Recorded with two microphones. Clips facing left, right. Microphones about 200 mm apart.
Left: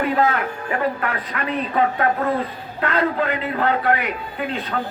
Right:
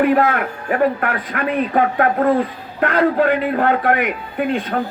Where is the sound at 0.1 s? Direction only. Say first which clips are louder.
Right 4 dB; 55° right (ahead or behind).